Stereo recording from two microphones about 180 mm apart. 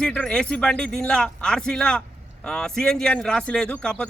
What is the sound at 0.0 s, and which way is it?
A man's voice, 5° left (ahead or behind).